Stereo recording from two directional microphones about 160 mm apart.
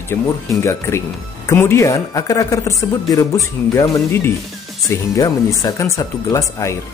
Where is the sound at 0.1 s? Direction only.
15° left (ahead or behind).